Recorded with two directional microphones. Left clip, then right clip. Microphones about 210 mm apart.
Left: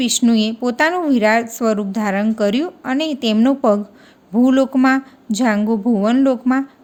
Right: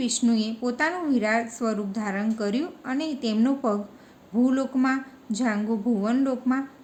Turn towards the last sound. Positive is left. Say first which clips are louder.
# left 9 dB
turn(degrees=50)  # may be behind; listen again after turning